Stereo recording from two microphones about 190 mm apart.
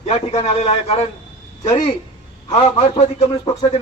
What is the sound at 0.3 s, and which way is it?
Speech, 35° left (ahead or behind).